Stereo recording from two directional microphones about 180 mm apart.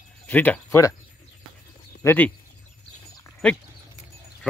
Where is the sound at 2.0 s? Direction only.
10° left (ahead or behind).